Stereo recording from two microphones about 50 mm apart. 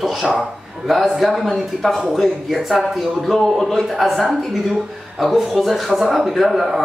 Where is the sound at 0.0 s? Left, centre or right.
Centre.